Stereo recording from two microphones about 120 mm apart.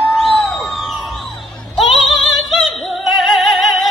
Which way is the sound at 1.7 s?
Centre (ahead or behind).